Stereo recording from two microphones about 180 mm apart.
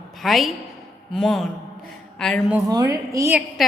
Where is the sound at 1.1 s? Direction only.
Centre (ahead or behind).